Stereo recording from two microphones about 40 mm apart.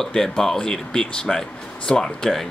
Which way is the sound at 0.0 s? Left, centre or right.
Centre.